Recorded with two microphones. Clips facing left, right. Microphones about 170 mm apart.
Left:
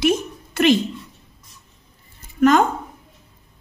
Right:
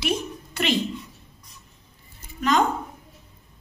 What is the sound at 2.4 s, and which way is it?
Speech, 50° left (ahead or behind).